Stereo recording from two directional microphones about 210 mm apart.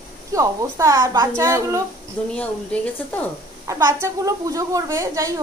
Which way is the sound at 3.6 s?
15° right (ahead or behind).